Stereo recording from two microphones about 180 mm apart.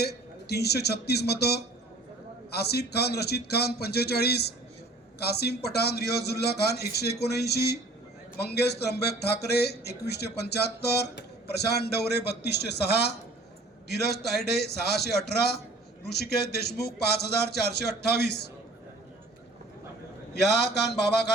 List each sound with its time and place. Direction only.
0.0 s speech: 65° left (ahead or behind)
20.3 s a man's voice: 65° left (ahead or behind)